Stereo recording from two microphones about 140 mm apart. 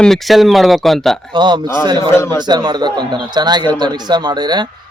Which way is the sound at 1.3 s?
35° right (ahead or behind).